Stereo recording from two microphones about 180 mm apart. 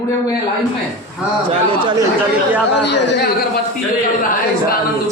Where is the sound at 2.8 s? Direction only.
70° left (ahead or behind).